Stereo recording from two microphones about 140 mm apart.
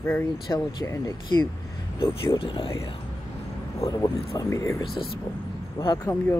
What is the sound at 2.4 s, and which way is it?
Speech, 40° left (ahead or behind).